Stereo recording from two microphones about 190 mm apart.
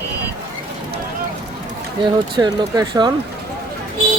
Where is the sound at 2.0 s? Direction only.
25° right (ahead or behind).